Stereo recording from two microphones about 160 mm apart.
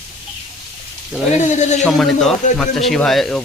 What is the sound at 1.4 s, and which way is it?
Speech, 45° left (ahead or behind).